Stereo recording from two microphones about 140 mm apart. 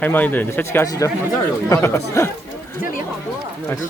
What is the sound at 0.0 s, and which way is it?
Speech, 10° left (ahead or behind).